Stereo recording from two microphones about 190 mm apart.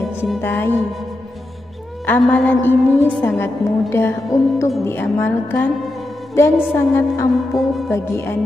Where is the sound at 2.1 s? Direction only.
10° left (ahead or behind).